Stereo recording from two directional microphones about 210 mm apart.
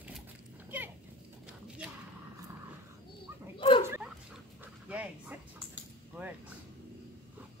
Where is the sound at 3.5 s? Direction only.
25° left (ahead or behind).